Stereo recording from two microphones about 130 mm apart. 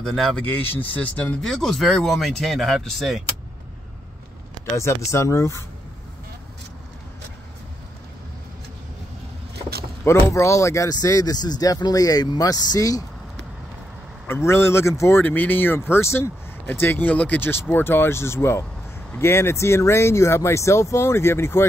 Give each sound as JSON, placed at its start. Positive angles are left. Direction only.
{"t": 0.0, "sound": "speech", "side_deg": 5}
{"t": 0.5, "sound": "speech", "side_deg": 15}
{"t": 4.7, "sound": "speech", "side_deg": 20}
{"t": 10.0, "sound": "speech", "side_deg": 20}
{"t": 14.2, "sound": "speech", "side_deg": 20}